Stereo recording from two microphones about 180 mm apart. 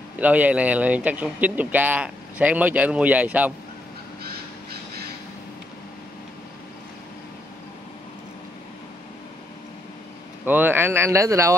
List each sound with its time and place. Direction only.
0.2 s speech: 10° right (ahead or behind)
4.2 s crow: 60° right (ahead or behind)
10.4 s speech: 10° right (ahead or behind)